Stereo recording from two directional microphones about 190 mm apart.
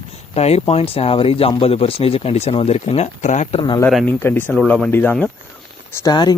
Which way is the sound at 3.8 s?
10° left (ahead or behind).